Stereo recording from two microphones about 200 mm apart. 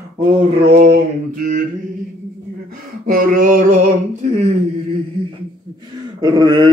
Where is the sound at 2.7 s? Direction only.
45° right (ahead or behind).